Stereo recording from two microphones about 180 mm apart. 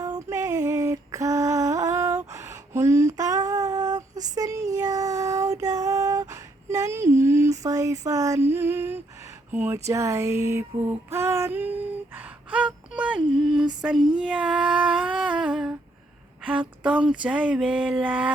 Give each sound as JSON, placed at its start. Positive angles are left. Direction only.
{"t": 0.0, "sound": "female singing", "side_deg": -20}
{"t": 13.8, "sound": "humming", "side_deg": -5}
{"t": 16.4, "sound": "a sound", "side_deg": -5}